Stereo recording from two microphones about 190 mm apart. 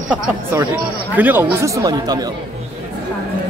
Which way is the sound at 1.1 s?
10° right (ahead or behind).